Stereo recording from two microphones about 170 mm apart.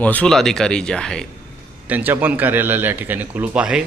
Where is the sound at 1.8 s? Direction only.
10° right (ahead or behind).